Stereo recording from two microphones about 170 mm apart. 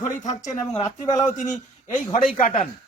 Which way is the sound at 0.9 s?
45° left (ahead or behind).